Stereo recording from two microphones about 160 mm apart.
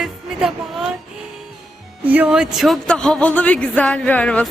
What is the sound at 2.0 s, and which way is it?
Speech, 10° right (ahead or behind).